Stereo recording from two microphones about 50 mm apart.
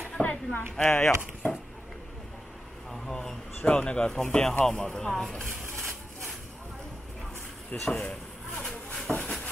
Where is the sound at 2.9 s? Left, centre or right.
Centre.